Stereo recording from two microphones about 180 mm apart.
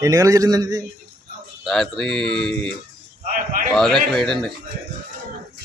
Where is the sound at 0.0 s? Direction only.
20° right (ahead or behind).